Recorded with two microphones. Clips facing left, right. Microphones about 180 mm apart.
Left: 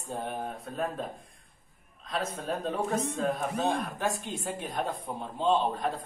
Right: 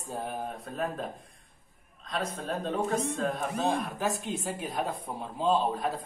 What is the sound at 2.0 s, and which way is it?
A man's voice, centre (ahead or behind).